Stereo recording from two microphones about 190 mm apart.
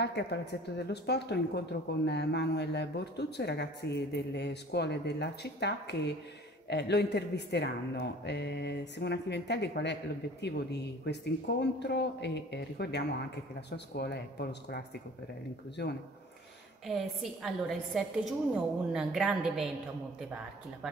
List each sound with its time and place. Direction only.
0.0 s speech: 60° left (ahead or behind)
15.8 s speech: 60° left (ahead or behind)
16.8 s a woman's voice: centre (ahead or behind)